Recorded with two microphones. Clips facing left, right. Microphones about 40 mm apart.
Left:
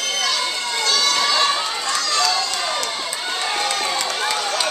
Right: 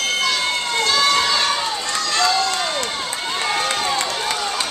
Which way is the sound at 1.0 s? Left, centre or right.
Right.